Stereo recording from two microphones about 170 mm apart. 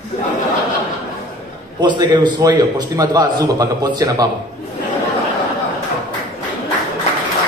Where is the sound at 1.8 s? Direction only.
25° right (ahead or behind).